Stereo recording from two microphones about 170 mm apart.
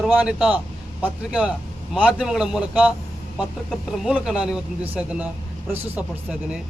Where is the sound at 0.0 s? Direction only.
5° right (ahead or behind).